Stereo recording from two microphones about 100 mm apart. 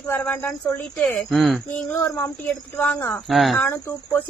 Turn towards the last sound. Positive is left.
turn(degrees=25)  # may be behind; listen again after turning